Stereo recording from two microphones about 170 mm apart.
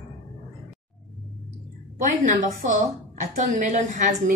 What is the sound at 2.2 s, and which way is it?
A woman's voice, 50° right (ahead or behind).